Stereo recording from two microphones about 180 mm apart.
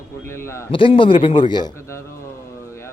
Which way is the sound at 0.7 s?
30° left (ahead or behind).